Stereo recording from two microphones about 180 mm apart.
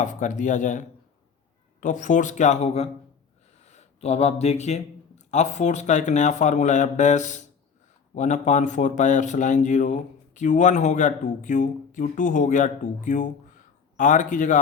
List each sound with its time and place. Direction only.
0.0 s a man's voice: 45° left (ahead or behind)